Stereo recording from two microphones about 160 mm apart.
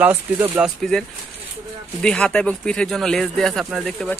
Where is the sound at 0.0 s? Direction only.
10° right (ahead or behind).